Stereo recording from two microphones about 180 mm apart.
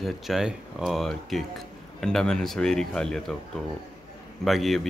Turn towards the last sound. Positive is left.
turn(degrees=0)  # may be behind; listen again after turning